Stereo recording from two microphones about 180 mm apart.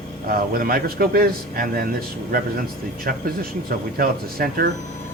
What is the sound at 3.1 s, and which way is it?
A man's voice, 55° right (ahead or behind).